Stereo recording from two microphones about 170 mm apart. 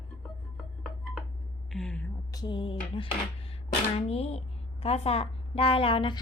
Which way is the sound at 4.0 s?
35° left (ahead or behind).